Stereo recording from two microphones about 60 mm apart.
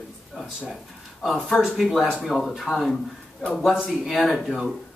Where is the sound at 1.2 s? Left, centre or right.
Centre.